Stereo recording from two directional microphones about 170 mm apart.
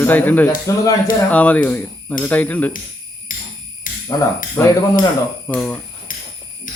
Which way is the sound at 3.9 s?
55° left (ahead or behind).